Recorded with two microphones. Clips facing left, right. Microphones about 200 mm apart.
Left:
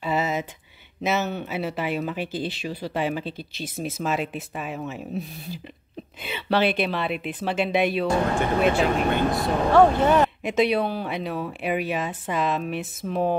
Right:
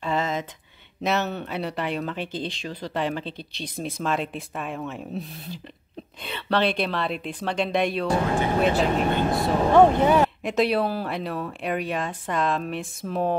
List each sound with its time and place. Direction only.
0.0 s a sound: 10° left (ahead or behind)
1.0 s speech: centre (ahead or behind)
9.7 s speech: 15° right (ahead or behind)
10.0 s speech: 5° right (ahead or behind)